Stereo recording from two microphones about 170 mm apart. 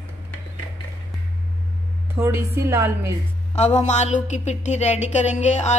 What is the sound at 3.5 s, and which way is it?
A woman's voice, 40° left (ahead or behind).